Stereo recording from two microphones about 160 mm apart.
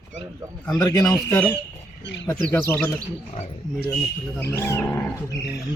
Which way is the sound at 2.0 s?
90° left.